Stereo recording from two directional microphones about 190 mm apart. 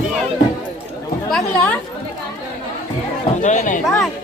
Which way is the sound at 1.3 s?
5° left (ahead or behind).